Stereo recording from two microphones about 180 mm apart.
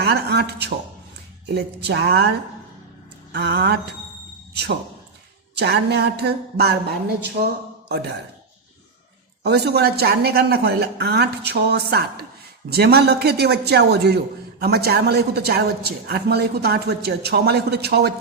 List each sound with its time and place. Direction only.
0.0 s speech: 65° right (ahead or behind)
3.3 s speech: 70° right (ahead or behind)
9.4 s speech: 65° right (ahead or behind)